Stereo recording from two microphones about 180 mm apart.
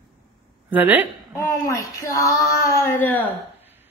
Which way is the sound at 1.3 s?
15° left (ahead or behind).